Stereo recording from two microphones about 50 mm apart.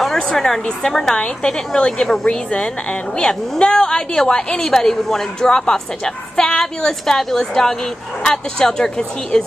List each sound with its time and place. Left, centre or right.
0.0 s a woman's voice: centre